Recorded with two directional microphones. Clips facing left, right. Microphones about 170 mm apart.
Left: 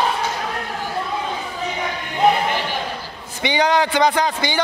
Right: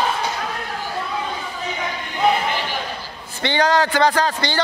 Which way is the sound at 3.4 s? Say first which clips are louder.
Even; 10° left (ahead or behind).